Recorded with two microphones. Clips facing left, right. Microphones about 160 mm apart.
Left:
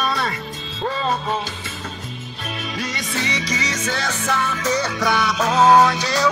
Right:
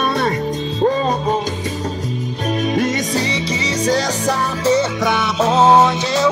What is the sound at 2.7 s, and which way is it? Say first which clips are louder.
Music: right 9 dB; 50° right (ahead or behind).